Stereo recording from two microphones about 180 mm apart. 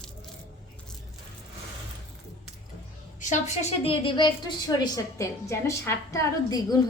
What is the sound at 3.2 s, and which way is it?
A woman's voice, 40° left (ahead or behind).